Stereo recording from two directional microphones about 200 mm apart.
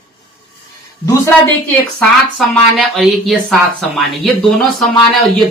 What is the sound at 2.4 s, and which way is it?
Speech, centre (ahead or behind).